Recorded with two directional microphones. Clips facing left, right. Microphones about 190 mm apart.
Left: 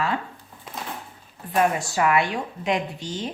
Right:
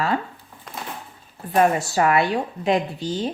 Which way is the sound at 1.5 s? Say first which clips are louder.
Right 3 dB; 40° right (ahead or behind).